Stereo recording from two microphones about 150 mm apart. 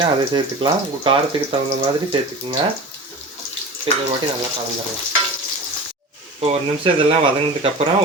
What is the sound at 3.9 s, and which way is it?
Speech, 35° right (ahead or behind).